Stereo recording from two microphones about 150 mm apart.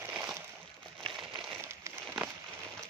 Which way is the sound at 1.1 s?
Centre (ahead or behind).